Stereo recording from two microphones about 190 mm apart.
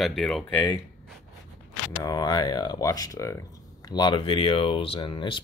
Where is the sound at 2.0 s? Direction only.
20° left (ahead or behind).